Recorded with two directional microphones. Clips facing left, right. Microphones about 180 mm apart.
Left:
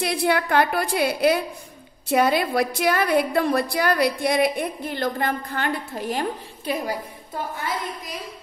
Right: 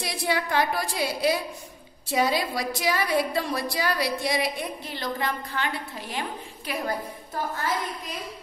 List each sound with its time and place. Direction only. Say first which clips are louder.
0.0 s a woman's voice: left 6 dB; 55° left (ahead or behind)